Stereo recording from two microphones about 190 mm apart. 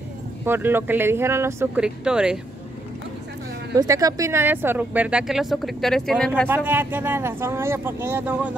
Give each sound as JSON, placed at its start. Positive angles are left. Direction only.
{"t": 0.5, "sound": "speech", "side_deg": -10}
{"t": 3.7, "sound": "a woman's voice", "side_deg": -20}
{"t": 6.5, "sound": "speech", "side_deg": -10}